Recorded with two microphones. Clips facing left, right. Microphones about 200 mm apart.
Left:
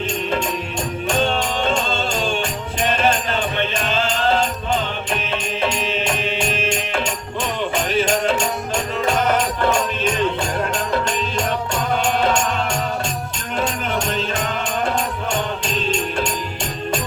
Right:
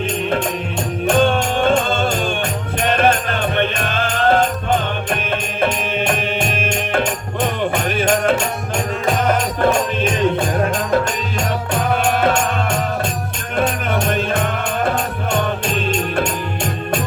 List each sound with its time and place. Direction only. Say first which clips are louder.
1.0 s music: right 6 dB; 55° right (ahead or behind)
13.6 s music: right 4 dB; 55° right (ahead or behind)